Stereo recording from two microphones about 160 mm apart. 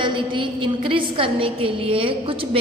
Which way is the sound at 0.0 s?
30° right (ahead or behind).